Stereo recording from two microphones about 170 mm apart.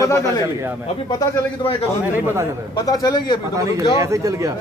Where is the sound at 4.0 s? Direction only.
20° right (ahead or behind).